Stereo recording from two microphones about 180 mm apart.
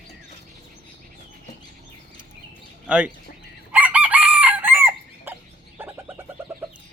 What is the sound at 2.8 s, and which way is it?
Speech, 5° right (ahead or behind).